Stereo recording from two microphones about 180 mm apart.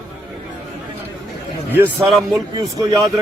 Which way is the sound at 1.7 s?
10° right (ahead or behind).